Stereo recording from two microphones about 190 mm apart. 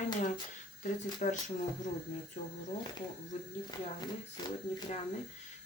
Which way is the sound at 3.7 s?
20° left (ahead or behind).